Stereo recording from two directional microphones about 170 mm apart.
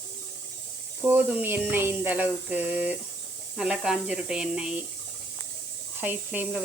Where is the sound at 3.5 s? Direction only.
5° right (ahead or behind).